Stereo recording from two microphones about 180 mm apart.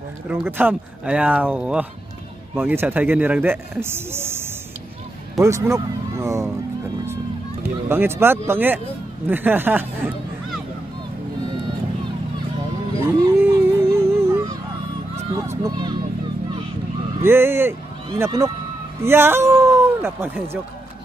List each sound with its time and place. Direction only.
0.5 s speech: 10° right (ahead or behind)
7.9 s speech: 15° right (ahead or behind)
13.0 s a sound: 15° right (ahead or behind)
15.3 s music: 15° right (ahead or behind)
17.2 s speech: 15° right (ahead or behind)